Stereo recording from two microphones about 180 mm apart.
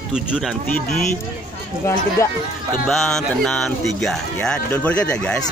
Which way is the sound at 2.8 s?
Centre (ahead or behind).